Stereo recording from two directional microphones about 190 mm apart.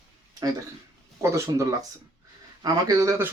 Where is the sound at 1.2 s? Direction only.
15° right (ahead or behind).